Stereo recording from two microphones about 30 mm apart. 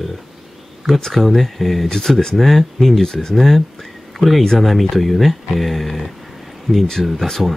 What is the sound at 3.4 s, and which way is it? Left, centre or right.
Speech, centre.